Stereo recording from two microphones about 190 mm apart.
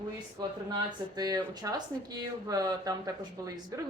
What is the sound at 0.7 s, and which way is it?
Speech, 20° right (ahead or behind).